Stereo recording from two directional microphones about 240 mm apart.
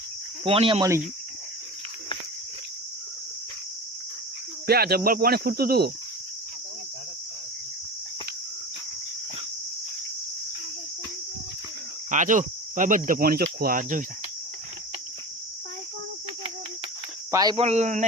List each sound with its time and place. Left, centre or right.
0.4 s speech: right
4.6 s cricket: right
12.1 s cricket: right
17.3 s speech: centre